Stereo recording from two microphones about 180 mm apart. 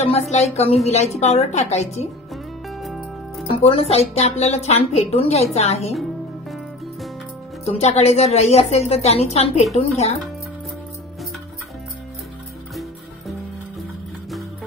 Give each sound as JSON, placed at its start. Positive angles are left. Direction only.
{"t": 0.3, "sound": "a woman's voice", "side_deg": 35}
{"t": 2.8, "sound": "music", "side_deg": 0}
{"t": 3.5, "sound": "a woman's voice", "side_deg": 30}
{"t": 7.6, "sound": "a woman's voice", "side_deg": 35}